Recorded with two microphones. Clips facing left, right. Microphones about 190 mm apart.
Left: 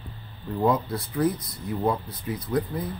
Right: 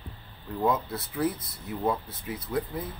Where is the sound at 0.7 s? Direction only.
5° right (ahead or behind).